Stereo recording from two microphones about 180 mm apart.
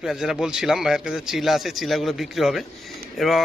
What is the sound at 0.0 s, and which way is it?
A man's voice, centre (ahead or behind).